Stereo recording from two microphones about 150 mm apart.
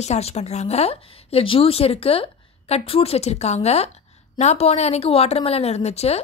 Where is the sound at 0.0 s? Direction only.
45° left (ahead or behind).